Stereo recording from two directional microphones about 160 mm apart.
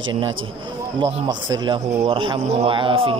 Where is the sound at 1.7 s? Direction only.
35° right (ahead or behind).